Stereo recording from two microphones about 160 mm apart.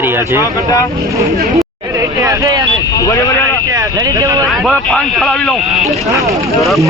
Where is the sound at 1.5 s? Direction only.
20° right (ahead or behind).